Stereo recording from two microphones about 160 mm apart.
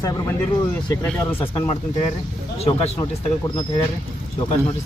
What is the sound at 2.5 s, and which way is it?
Speech, 40° left (ahead or behind).